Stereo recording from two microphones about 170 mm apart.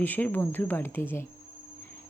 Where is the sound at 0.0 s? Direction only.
10° left (ahead or behind).